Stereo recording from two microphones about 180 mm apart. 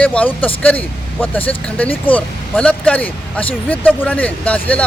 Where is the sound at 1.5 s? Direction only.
10° left (ahead or behind).